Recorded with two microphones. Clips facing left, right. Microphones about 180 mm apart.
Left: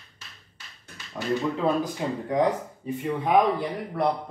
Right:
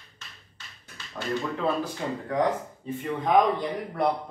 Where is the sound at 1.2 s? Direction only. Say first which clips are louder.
Left 3 dB; 15° left (ahead or behind).